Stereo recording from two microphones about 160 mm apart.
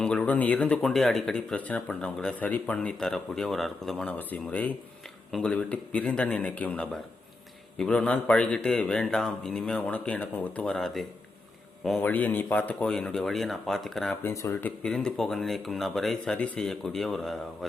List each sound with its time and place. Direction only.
0.0 s a man's voice: 5° left (ahead or behind)
14.3 s a man's voice: 15° left (ahead or behind)
14.8 s speech: 5° left (ahead or behind)